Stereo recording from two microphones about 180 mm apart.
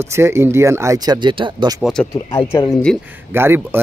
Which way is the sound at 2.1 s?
20° left (ahead or behind).